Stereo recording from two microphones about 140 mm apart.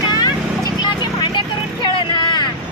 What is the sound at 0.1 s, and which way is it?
Vehicle, 30° left (ahead or behind).